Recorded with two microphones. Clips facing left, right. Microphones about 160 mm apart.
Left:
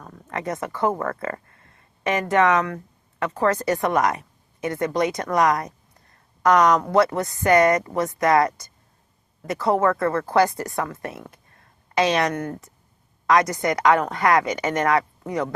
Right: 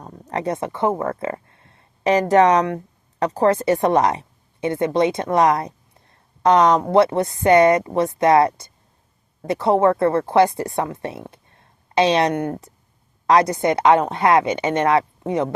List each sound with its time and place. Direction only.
0.0 s speech: 30° right (ahead or behind)